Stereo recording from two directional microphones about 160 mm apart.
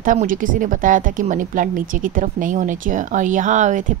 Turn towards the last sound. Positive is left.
turn(degrees=-50)  # may be behind; listen again after turning